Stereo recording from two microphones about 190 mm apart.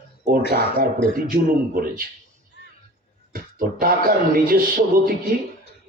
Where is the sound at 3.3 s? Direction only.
50° right (ahead or behind).